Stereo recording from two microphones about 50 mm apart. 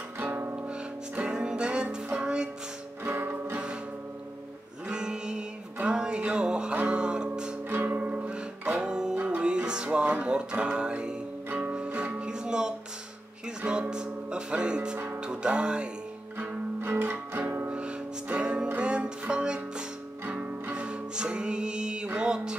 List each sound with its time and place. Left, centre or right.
0.2 s music: right
1.1 s music: centre
3.0 s music: right
4.8 s music: centre
7.7 s music: right
8.6 s music: centre
16.3 s music: right
17.4 s music: right
17.7 s music: right
20.7 s music: right